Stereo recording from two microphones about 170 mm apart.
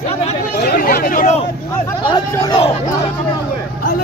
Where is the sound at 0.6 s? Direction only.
60° left (ahead or behind).